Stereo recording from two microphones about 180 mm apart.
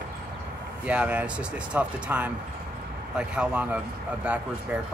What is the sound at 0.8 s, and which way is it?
A man's voice, 5° right (ahead or behind).